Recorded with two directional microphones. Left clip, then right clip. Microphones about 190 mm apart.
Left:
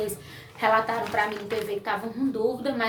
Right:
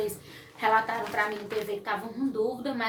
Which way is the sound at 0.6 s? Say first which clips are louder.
Left 2 dB; 20° left (ahead or behind).